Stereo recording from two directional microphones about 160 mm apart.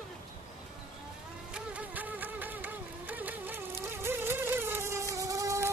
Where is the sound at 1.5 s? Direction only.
10° right (ahead or behind).